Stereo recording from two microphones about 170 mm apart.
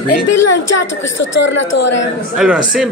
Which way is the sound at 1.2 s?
90° left.